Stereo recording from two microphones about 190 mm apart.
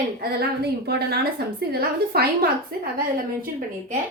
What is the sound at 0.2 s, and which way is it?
Speech, 55° right (ahead or behind).